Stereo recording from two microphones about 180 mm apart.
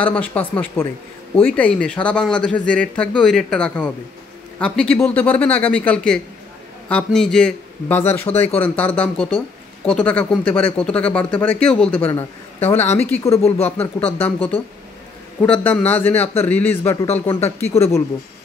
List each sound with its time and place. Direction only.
0.0 s a man's voice: 10° left (ahead or behind)
13.3 s speech: 35° left (ahead or behind)
13.7 s a man's voice: 10° left (ahead or behind)